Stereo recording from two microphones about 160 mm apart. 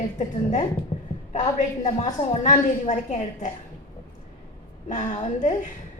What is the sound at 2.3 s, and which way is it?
A woman's voice, 50° left (ahead or behind).